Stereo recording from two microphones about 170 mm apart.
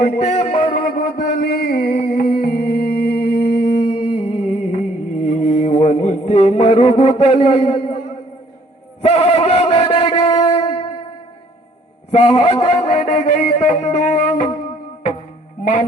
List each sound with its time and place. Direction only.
0.4 s music: 35° left (ahead or behind)
0.7 s a sound: 60° left (ahead or behind); by 4.8 s 40° left (ahead or behind)
5.2 s music: 45° left (ahead or behind)
9.0 s chant: 40° left (ahead or behind)
12.1 s a man's voice: 40° left (ahead or behind)
13.1 s music: 50° left (ahead or behind)
15.6 s music: 50° left (ahead or behind)